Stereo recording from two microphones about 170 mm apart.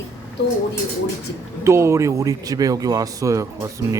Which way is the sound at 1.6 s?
15° right (ahead or behind).